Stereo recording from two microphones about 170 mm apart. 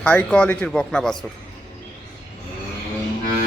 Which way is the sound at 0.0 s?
5° left (ahead or behind).